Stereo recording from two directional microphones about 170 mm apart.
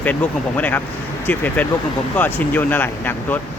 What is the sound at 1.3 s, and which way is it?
Speech, 10° left (ahead or behind).